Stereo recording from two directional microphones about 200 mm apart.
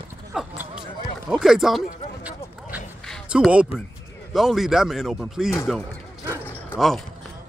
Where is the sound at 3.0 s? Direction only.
Centre (ahead or behind).